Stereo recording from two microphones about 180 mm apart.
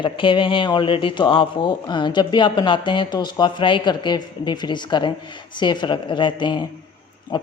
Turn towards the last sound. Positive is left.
turn(degrees=25)  # may be behind; listen again after turning